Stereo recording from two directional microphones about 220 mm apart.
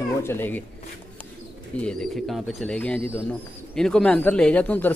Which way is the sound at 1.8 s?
5° left (ahead or behind).